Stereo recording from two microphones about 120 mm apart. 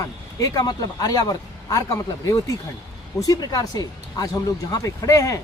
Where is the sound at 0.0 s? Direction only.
30° left (ahead or behind).